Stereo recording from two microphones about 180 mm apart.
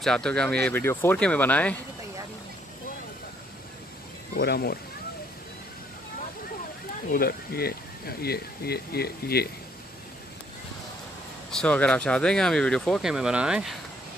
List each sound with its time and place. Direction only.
0.0 s speech: 5° left (ahead or behind)
4.4 s speech: 60° left (ahead or behind)
7.1 s speech: 55° left (ahead or behind)
11.5 s speech: 5° left (ahead or behind)